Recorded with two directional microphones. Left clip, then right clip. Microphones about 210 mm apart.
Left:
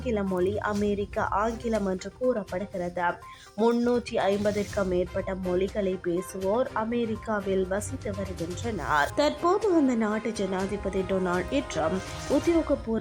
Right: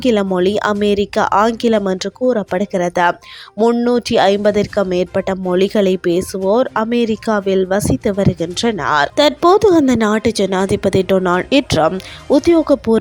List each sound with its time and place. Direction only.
0.0 s a woman's voice: 40° right (ahead or behind)